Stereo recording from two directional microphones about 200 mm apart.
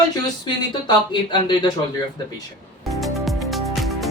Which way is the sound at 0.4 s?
20° left (ahead or behind).